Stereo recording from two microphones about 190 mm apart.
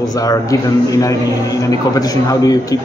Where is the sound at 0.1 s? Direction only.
20° left (ahead or behind).